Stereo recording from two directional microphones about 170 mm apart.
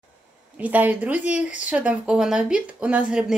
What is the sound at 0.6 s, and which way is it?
Speech, 10° right (ahead or behind).